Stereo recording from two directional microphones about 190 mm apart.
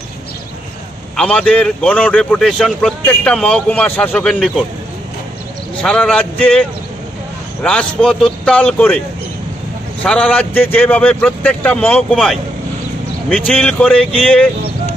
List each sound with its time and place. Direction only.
1.1 s a man's voice: 5° left (ahead or behind)
5.8 s a man's voice: 5° left (ahead or behind)
7.6 s a man's voice: 5° left (ahead or behind)
10.0 s a man's voice: 5° left (ahead or behind)